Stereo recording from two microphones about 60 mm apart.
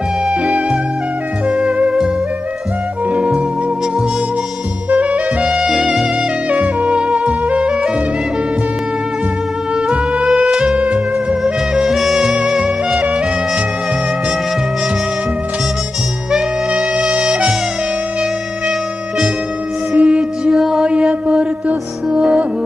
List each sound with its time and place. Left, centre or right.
0.3 s music: centre
3.1 s music: centre
4.8 s music: right
6.5 s saxophone: right
9.8 s music: centre
16.3 s music: centre
16.9 s music: centre
20.0 s music: centre